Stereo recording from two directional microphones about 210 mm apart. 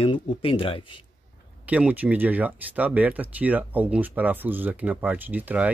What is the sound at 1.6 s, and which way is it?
Speech, 5° right (ahead or behind).